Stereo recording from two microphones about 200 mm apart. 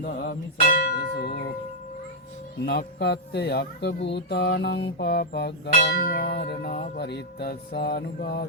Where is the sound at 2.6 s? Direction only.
55° left (ahead or behind).